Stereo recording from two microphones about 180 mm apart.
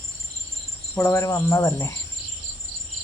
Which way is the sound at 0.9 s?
10° left (ahead or behind).